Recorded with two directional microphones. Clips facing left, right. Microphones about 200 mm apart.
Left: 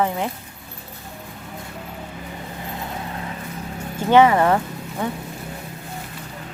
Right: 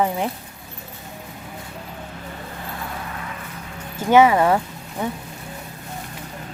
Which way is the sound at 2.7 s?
30° left (ahead or behind).